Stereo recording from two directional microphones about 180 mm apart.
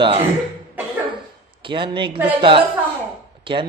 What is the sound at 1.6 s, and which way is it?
A man's voice, 25° right (ahead or behind).